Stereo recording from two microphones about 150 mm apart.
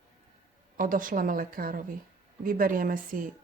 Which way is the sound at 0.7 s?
70° right (ahead or behind).